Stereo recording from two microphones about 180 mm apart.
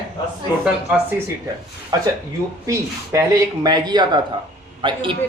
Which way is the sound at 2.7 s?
15° right (ahead or behind).